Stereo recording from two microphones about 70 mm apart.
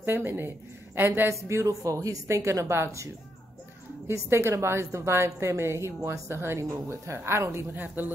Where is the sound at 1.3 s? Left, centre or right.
Right.